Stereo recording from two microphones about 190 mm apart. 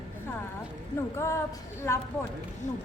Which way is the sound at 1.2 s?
15° left (ahead or behind).